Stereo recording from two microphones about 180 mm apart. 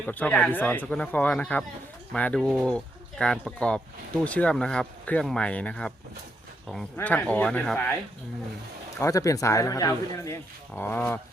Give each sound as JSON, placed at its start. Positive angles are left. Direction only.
{"t": 0.0, "sound": "speech", "side_deg": 10}
{"t": 6.9, "sound": "speech", "side_deg": 10}
{"t": 9.0, "sound": "speech", "side_deg": 15}